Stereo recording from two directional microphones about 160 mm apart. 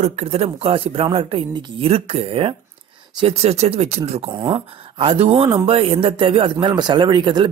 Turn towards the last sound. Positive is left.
turn(degrees=-30)  # may be behind; listen again after turning